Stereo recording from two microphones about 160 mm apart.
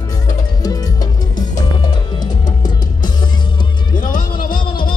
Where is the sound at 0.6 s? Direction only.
25° left (ahead or behind).